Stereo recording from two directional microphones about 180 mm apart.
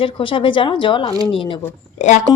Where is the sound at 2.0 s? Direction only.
40° left (ahead or behind).